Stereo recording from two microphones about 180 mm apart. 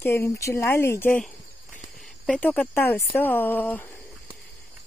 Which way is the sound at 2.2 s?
10° left (ahead or behind).